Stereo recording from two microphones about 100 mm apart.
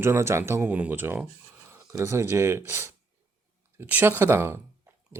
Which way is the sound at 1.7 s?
35° right (ahead or behind).